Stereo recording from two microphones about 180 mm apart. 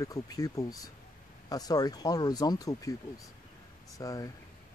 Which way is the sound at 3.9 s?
20° left (ahead or behind).